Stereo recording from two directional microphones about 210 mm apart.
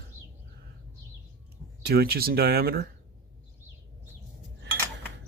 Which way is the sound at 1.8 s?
50° right (ahead or behind).